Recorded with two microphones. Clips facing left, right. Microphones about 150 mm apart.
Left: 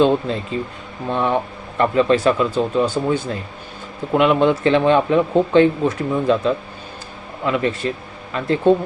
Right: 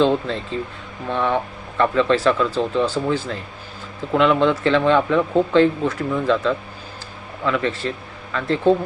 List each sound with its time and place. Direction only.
0.0 s speech: 15° left (ahead or behind)